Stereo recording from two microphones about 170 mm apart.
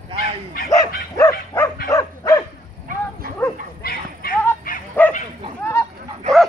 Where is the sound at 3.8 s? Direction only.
60° left (ahead or behind).